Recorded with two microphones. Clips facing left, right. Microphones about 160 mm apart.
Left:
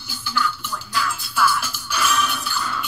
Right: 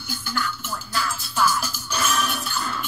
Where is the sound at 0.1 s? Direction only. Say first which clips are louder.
Left 3 dB; 50° right (ahead or behind).